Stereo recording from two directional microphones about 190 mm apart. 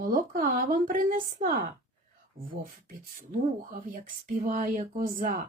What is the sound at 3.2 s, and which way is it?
Speech, 40° right (ahead or behind).